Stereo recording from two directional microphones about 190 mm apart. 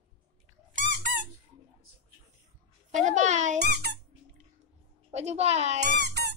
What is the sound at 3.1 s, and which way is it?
Speech, 40° right (ahead or behind).